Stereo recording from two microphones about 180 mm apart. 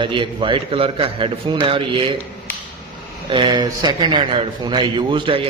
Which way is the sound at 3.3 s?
25° right (ahead or behind).